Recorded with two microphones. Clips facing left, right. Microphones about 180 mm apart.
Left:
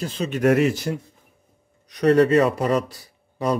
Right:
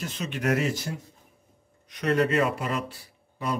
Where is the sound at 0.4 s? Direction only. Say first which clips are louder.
Left 8 dB; 60° left (ahead or behind).